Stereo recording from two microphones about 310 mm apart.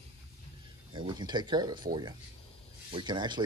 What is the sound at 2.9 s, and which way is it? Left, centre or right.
Speech, centre.